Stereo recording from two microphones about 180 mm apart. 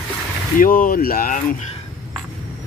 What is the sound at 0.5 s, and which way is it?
Speech, 50° left (ahead or behind).